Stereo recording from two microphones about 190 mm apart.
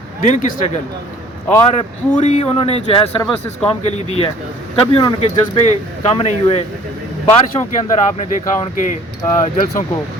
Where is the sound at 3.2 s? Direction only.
5° left (ahead or behind).